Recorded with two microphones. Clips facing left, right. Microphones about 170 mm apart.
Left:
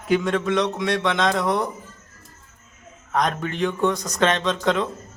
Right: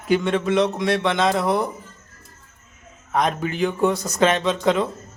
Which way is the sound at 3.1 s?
5° right (ahead or behind).